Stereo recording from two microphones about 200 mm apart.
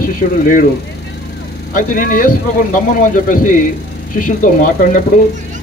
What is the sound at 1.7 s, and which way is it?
Speech, 45° left (ahead or behind).